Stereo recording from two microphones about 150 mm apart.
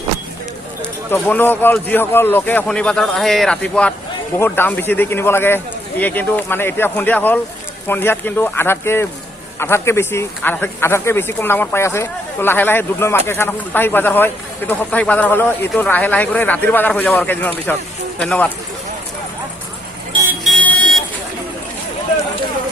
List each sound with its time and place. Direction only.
1.1 s speech: 15° left (ahead or behind)
20.4 s vehicle: 5° left (ahead or behind)